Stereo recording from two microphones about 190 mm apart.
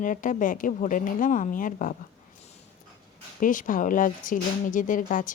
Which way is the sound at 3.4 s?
45° left (ahead or behind).